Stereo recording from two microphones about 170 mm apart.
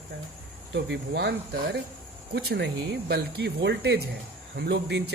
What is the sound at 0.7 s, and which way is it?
Speech, 85° right.